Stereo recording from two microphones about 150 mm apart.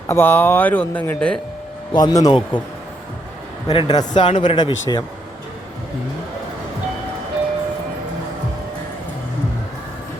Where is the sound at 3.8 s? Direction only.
25° left (ahead or behind).